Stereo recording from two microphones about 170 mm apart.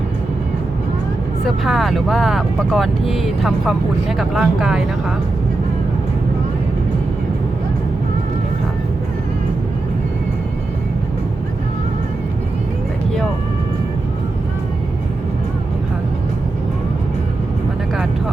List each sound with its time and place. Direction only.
1.5 s speech: centre (ahead or behind)